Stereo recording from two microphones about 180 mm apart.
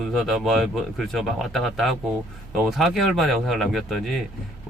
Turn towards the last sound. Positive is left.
turn(degrees=0)  # may be behind; listen again after turning